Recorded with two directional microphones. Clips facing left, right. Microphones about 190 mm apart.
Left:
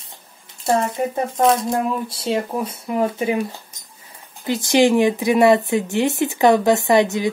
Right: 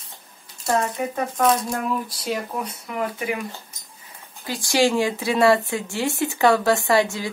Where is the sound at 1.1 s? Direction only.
25° left (ahead or behind).